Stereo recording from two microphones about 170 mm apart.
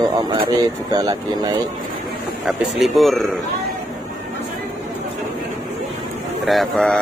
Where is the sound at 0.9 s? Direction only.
20° right (ahead or behind).